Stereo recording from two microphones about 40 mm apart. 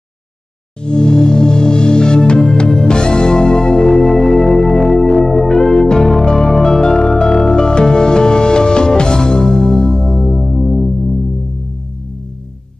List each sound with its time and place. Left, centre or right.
0.8 s music: left; by 11.3 s centre